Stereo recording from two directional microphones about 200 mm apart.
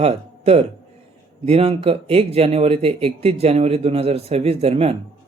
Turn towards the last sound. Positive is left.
turn(degrees=-30)  # may be behind; listen again after turning